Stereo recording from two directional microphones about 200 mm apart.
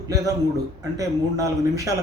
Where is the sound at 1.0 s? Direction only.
15° right (ahead or behind).